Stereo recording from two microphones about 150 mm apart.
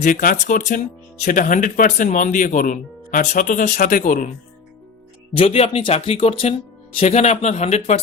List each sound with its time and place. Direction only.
0.0 s speech: 70° left (ahead or behind)
5.4 s speech: 45° left (ahead or behind)